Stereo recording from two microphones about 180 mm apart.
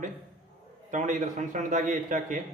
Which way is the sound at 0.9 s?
45° right (ahead or behind).